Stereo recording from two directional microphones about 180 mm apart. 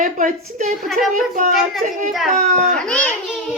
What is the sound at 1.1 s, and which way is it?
A woman's voice, 45° right (ahead or behind).